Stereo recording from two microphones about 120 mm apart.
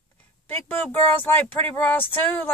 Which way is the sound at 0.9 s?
15° left (ahead or behind).